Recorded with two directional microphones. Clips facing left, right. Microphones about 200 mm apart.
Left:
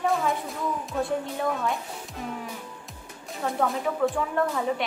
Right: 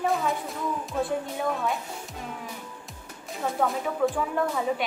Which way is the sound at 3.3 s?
Centre (ahead or behind).